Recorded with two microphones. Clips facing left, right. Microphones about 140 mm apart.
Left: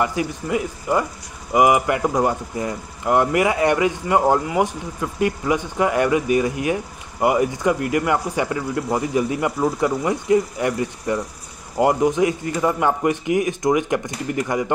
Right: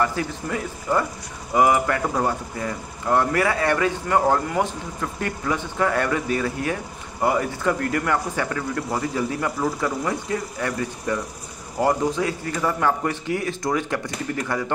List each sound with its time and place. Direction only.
0.0 s speech: 15° left (ahead or behind)